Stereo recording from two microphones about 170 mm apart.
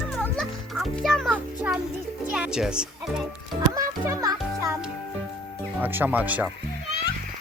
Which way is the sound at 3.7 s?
20° right (ahead or behind).